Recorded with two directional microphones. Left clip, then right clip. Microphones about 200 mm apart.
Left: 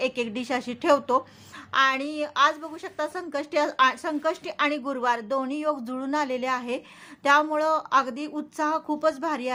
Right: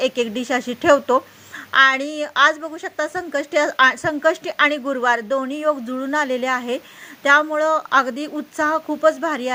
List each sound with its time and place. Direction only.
0.0 s a woman's voice: 25° right (ahead or behind)